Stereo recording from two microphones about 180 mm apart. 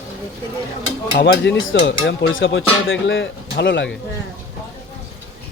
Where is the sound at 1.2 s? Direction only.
75° left (ahead or behind).